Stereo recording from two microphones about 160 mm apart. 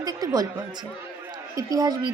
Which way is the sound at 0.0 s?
25° right (ahead or behind).